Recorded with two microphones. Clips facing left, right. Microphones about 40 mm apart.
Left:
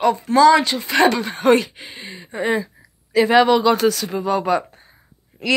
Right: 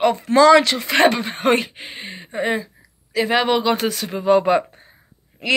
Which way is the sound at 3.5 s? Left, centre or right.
Right.